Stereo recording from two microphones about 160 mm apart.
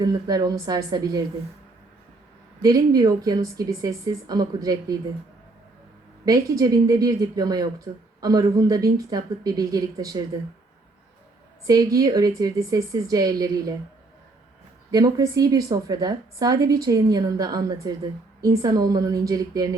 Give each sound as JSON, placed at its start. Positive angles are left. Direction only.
{"t": 0.0, "sound": "a woman's voice", "side_deg": -25}
{"t": 2.6, "sound": "a woman's voice", "side_deg": -25}
{"t": 6.2, "sound": "a woman's voice", "side_deg": -20}
{"t": 11.6, "sound": "a woman's voice", "side_deg": -20}
{"t": 14.8, "sound": "a woman's voice", "side_deg": -20}